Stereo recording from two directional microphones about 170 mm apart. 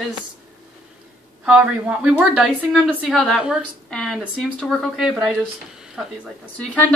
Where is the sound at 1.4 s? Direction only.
5° right (ahead or behind).